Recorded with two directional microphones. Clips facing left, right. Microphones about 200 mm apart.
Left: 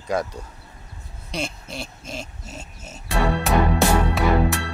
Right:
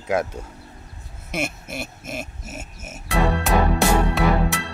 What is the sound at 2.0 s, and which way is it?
Pig, 5° right (ahead or behind).